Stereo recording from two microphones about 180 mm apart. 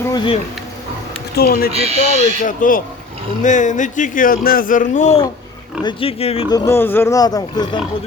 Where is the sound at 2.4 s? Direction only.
45° left (ahead or behind).